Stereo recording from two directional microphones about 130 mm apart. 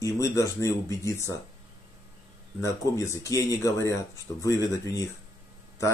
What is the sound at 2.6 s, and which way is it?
Speech, 25° left (ahead or behind).